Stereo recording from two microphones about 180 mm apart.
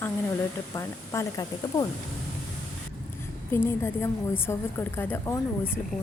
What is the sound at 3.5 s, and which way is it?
A woman's voice, 15° left (ahead or behind).